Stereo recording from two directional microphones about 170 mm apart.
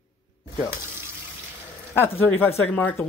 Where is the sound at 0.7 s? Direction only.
15° right (ahead or behind).